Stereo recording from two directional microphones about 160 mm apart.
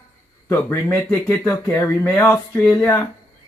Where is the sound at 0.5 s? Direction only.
15° left (ahead or behind).